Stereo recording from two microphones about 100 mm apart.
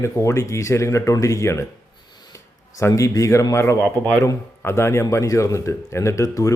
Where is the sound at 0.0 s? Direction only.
30° left (ahead or behind).